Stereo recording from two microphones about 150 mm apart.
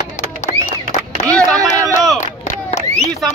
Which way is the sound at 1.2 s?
20° right (ahead or behind).